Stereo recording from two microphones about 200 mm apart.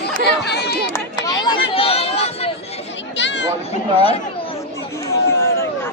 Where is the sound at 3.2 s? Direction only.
60° left (ahead or behind).